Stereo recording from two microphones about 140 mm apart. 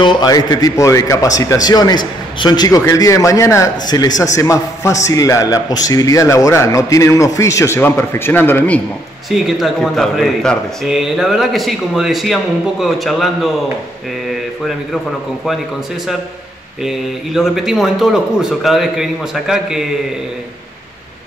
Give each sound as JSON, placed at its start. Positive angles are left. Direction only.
{"t": 0.0, "sound": "a man's voice", "side_deg": 25}
{"t": 9.3, "sound": "a man's voice", "side_deg": 0}
{"t": 16.8, "sound": "a man's voice", "side_deg": 0}